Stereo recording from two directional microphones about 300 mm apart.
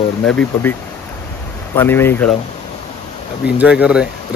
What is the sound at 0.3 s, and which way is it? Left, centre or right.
Speech, centre.